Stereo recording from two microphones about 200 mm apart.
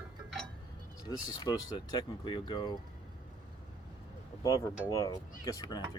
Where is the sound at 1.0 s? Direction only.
20° left (ahead or behind).